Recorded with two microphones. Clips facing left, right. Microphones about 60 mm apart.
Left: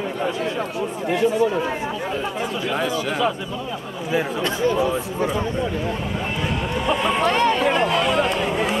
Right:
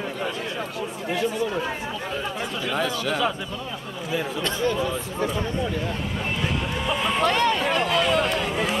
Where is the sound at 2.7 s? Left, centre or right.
Centre.